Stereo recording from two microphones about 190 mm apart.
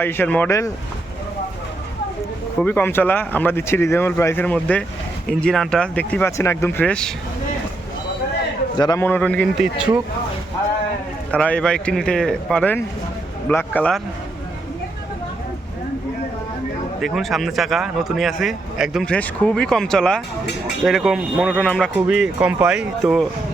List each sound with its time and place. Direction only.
0.0 s speech: 10° left (ahead or behind)
2.6 s speech: 10° left (ahead or behind)
8.8 s a man's voice: 20° left (ahead or behind)
9.0 s speech: 10° left (ahead or behind)
11.3 s speech: 5° left (ahead or behind)
17.0 s speech: centre (ahead or behind)
21.9 s speech: 5° right (ahead or behind)